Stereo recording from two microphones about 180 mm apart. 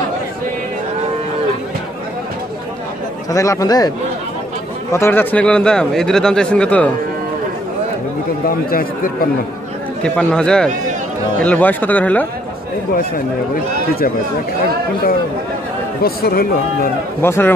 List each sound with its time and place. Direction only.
3.3 s a man's voice: 20° left (ahead or behind)
4.9 s speech: 10° left (ahead or behind)
8.5 s speech: 50° left (ahead or behind)
10.0 s speech: 5° left (ahead or behind)
16.0 s speech: 55° left (ahead or behind)
17.2 s speech: 10° left (ahead or behind)